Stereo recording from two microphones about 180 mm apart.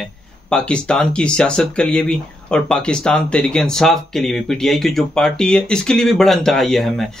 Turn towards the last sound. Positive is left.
turn(degrees=0)  # may be behind; listen again after turning